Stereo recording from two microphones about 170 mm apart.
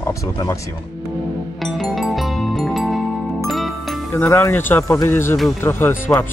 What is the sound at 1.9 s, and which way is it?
Music, centre (ahead or behind).